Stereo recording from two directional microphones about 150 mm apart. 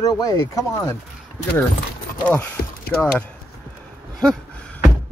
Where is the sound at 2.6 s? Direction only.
90° left.